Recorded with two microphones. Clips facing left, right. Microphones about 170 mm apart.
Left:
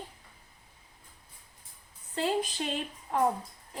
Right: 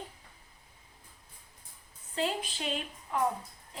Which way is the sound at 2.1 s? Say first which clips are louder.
Left 3 dB; 35° left (ahead or behind).